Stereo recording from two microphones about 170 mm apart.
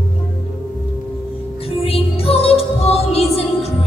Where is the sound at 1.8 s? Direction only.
35° left (ahead or behind).